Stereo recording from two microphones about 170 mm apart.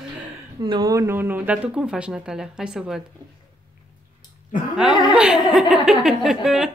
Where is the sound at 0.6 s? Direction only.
25° right (ahead or behind); by 3.0 s 5° right (ahead or behind).